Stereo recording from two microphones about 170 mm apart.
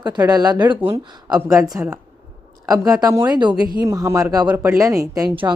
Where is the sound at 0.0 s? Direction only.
25° right (ahead or behind).